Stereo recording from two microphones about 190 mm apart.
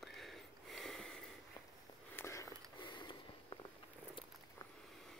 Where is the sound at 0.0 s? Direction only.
Centre (ahead or behind).